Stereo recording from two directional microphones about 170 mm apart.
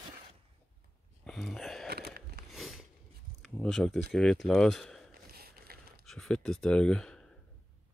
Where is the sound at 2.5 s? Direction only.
Centre (ahead or behind).